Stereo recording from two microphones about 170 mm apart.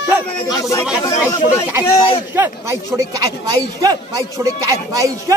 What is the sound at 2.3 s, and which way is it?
A man's voice, 15° right (ahead or behind).